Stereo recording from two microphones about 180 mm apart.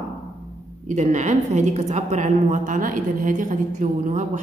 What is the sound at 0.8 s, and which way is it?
A woman's voice, 45° right (ahead or behind).